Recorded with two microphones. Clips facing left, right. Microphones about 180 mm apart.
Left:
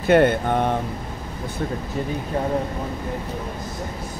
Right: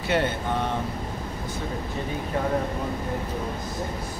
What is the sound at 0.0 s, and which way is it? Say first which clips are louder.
Speech: left 9 dB; 55° left (ahead or behind).